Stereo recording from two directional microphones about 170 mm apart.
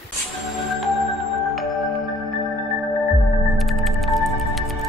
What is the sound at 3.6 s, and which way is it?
Music, centre (ahead or behind).